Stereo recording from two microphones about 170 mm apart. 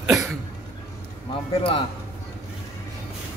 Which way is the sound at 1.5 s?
30° left (ahead or behind).